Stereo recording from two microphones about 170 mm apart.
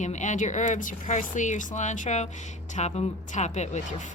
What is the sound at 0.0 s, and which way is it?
Speech, 45° left (ahead or behind).